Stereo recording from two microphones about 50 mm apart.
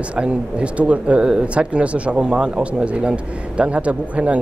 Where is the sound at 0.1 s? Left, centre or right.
Right.